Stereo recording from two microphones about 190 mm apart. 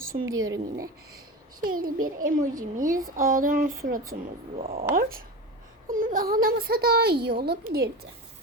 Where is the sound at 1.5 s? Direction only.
50° right (ahead or behind).